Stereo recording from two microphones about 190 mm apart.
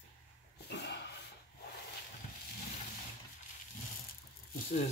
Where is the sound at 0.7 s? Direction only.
65° left (ahead or behind).